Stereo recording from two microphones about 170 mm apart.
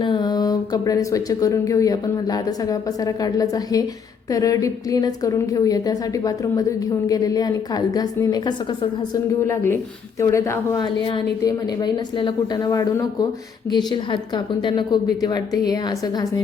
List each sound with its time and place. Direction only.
0.0 s a woman's voice: 25° left (ahead or behind)
10.8 s a woman's voice: 30° left (ahead or behind)